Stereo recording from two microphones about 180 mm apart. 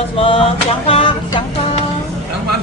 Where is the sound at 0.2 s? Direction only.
30° left (ahead or behind).